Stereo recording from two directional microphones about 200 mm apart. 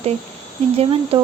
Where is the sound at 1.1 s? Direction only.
30° right (ahead or behind).